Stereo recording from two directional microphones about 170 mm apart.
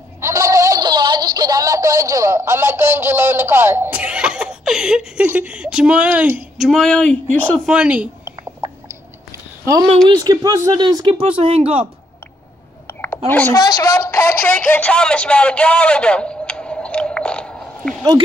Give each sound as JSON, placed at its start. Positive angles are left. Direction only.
{"t": 0.2, "sound": "speech", "side_deg": -20}
{"t": 6.6, "sound": "a woman's voice", "side_deg": 5}
{"t": 7.6, "sound": "a woman's voice", "side_deg": -5}
{"t": 8.3, "sound": "whispering", "side_deg": -10}
{"t": 10.0, "sound": "speech", "side_deg": -25}
{"t": 12.8, "sound": "a sound", "side_deg": 15}
{"t": 13.3, "sound": "a woman's voice", "side_deg": 10}
{"t": 13.6, "sound": "speech", "side_deg": 20}
{"t": 14.5, "sound": "a sound", "side_deg": 5}